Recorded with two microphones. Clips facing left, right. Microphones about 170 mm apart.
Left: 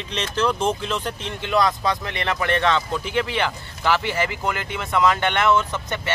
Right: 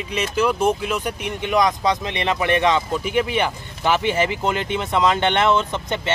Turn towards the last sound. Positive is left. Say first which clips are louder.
# right 3 dB
turn(degrees=-20)  # may be behind; listen again after turning